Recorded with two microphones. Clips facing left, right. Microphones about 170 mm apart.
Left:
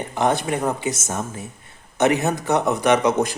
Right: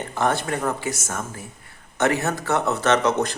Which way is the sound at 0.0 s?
20° left (ahead or behind).